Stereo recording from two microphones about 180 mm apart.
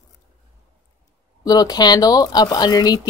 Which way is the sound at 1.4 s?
20° left (ahead or behind).